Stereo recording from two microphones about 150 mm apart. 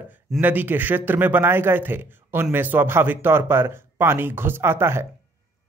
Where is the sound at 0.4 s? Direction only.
10° right (ahead or behind).